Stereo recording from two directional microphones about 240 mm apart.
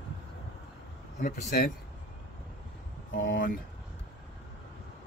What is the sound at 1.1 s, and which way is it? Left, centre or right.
Speech, left.